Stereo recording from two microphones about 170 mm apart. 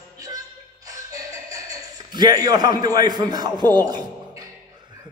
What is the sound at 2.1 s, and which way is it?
A man's voice, 25° right (ahead or behind).